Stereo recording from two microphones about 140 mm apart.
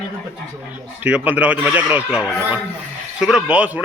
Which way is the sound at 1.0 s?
10° right (ahead or behind).